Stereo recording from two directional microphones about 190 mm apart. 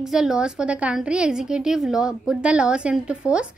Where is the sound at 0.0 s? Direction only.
Centre (ahead or behind).